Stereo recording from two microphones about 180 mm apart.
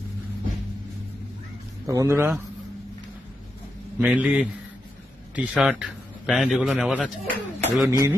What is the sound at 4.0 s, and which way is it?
A man's voice, 5° right (ahead or behind).